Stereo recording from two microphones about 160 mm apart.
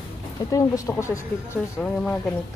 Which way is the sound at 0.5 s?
20° left (ahead or behind).